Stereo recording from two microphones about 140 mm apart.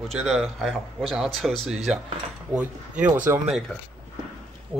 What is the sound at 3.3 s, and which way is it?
Speech, 15° right (ahead or behind).